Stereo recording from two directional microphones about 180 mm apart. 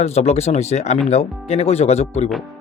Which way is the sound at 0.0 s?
35° left (ahead or behind).